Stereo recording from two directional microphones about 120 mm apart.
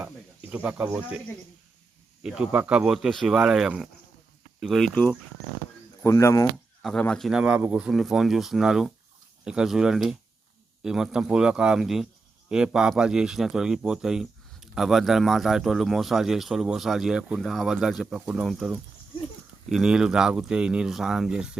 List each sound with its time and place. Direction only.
0.0 s snake: 15° right (ahead or behind)
2.2 s a man's voice: 10° right (ahead or behind)
6.0 s speech: 25° left (ahead or behind)
6.8 s speech: 5° left (ahead or behind)
7.3 s a man's voice: 5° right (ahead or behind)